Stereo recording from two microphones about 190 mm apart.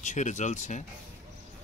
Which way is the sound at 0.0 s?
40° left (ahead or behind).